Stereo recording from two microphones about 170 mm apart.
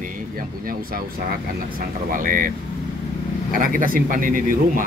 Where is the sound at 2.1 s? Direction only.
55° right (ahead or behind).